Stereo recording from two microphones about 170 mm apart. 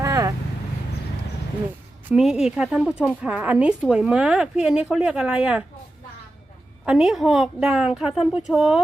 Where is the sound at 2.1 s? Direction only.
5° right (ahead or behind).